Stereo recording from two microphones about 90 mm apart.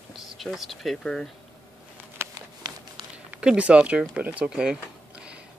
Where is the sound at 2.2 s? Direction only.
30° right (ahead or behind).